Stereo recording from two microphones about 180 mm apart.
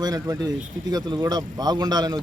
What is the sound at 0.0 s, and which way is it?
A man's voice, 20° right (ahead or behind).